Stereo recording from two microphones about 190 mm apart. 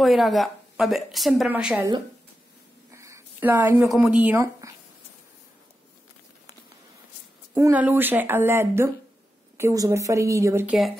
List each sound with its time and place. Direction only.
0.0 s a woman's voice: centre (ahead or behind)
2.9 s speech: 15° right (ahead or behind)
7.5 s speech: 10° right (ahead or behind)